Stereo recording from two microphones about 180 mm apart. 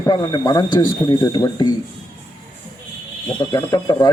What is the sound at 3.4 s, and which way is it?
Speech, 20° left (ahead or behind).